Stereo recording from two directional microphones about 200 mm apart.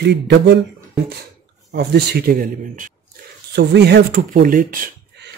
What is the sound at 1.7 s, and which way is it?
Speech, 55° right (ahead or behind).